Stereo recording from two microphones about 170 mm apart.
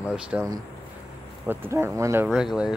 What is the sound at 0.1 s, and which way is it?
Speech, 5° right (ahead or behind).